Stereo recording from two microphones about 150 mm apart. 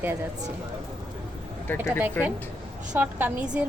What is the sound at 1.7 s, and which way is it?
Speech, 10° left (ahead or behind).